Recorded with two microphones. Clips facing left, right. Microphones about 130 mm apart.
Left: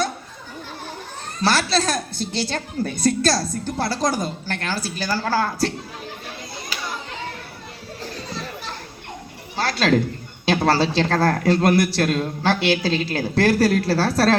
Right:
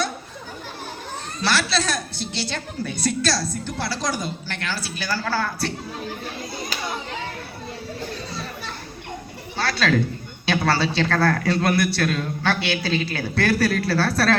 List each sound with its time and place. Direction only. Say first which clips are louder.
1.4 s a woman's voice: left 3 dB; 45° left (ahead or behind)
9.6 s speech: left 2 dB; 40° left (ahead or behind)